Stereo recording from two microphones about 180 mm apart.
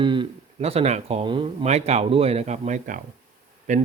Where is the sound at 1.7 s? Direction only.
35° right (ahead or behind).